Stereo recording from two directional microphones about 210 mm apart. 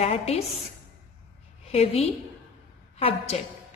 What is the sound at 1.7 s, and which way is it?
A woman's voice, 30° left (ahead or behind).